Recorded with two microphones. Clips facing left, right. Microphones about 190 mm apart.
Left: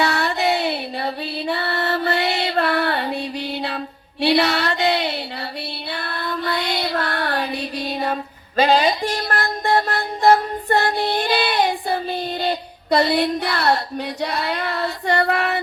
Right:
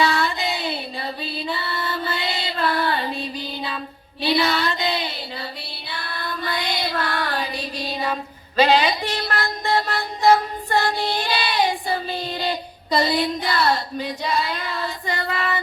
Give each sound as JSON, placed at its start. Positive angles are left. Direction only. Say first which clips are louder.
{"t": 0.0, "sound": "music", "louder": "left 2 dB", "side_deg": 65}
{"t": 4.2, "sound": "a sound", "louder": "left 3 dB", "side_deg": 70}
{"t": 5.9, "sound": "child singing", "louder": "left 3 dB", "side_deg": 60}